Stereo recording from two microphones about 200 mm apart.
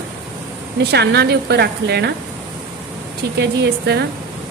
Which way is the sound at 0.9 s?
55° right (ahead or behind).